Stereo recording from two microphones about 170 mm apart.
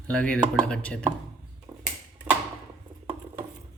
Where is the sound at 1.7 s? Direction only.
15° right (ahead or behind).